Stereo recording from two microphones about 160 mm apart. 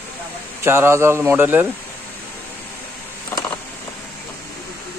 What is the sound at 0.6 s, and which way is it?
Speech, 15° right (ahead or behind).